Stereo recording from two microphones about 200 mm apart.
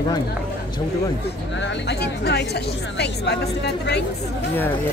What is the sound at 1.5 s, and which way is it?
Speech, 65° left (ahead or behind).